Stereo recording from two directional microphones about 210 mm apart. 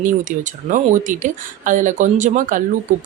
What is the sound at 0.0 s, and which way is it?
Speech, 40° right (ahead or behind).